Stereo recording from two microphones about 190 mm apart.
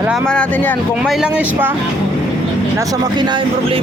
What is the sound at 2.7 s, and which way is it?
Speech, 20° right (ahead or behind).